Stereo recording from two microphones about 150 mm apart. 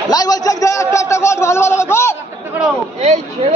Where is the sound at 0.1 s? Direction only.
25° left (ahead or behind).